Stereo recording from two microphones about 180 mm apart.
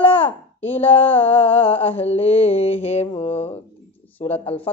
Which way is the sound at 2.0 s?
35° left (ahead or behind).